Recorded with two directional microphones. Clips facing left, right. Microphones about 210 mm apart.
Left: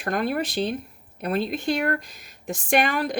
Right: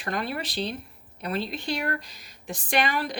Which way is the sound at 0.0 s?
50° left (ahead or behind).